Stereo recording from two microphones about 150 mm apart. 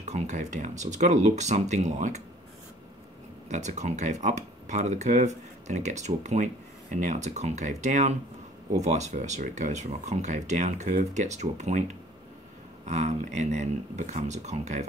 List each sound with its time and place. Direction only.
0.0 s speech: 50° right (ahead or behind)
3.4 s speech: 50° right (ahead or behind)
12.8 s speech: 50° right (ahead or behind)